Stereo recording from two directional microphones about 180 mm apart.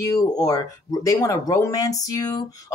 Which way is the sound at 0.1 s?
20° left (ahead or behind).